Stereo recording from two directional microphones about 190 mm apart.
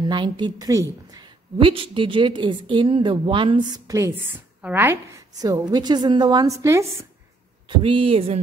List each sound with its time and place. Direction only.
0.0 s a woman's voice: 25° right (ahead or behind)
7.6 s a woman's voice: 25° right (ahead or behind)